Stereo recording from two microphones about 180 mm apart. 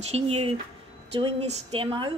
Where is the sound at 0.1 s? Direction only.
35° right (ahead or behind).